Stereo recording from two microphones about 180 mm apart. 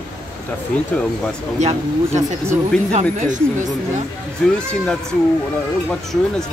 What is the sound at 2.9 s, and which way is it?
Speech, 45° right (ahead or behind).